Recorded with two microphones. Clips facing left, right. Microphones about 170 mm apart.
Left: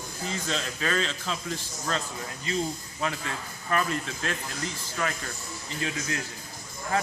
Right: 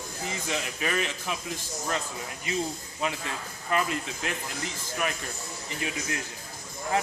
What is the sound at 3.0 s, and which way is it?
A man's voice, 20° right (ahead or behind).